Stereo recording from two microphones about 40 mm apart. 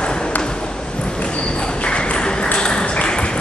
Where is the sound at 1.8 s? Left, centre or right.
Left.